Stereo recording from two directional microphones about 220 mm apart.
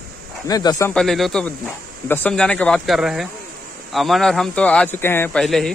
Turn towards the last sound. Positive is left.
turn(degrees=0)  # may be behind; listen again after turning